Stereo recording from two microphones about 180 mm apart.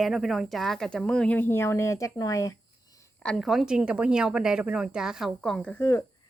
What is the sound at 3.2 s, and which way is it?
Speech, 5° left (ahead or behind).